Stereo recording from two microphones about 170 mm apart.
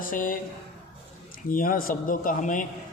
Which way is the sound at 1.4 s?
55° left (ahead or behind).